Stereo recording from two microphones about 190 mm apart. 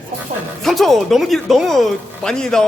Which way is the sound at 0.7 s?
Centre (ahead or behind).